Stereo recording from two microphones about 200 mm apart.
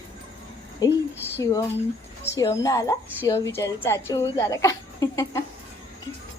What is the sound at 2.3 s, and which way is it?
A woman's voice, 15° left (ahead or behind).